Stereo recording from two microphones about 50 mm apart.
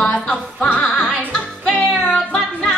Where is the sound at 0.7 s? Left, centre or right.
Left.